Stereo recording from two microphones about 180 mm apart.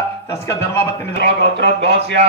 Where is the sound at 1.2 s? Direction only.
70° right (ahead or behind).